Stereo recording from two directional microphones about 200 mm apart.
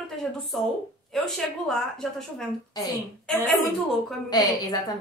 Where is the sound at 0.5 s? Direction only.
Centre (ahead or behind).